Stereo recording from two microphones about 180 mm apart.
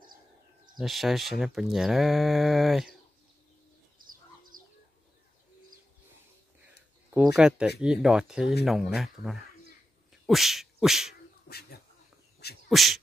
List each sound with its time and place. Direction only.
0.7 s speech: centre (ahead or behind)
4.0 s bird: 50° right (ahead or behind)
7.1 s speech: 5° right (ahead or behind)
10.2 s a sound: centre (ahead or behind)
11.4 s speech: 60° left (ahead or behind)
12.6 s beatboxing: centre (ahead or behind)